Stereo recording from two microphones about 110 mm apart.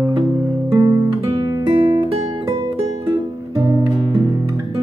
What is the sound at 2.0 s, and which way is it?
Music, 55° right (ahead or behind).